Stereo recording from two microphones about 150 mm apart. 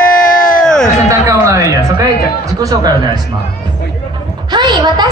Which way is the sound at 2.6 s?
25° right (ahead or behind).